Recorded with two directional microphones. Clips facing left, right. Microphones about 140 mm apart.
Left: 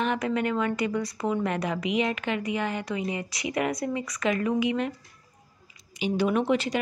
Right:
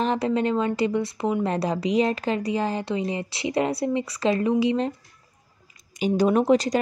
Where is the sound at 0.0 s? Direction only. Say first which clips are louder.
Right 4 dB; 30° right (ahead or behind).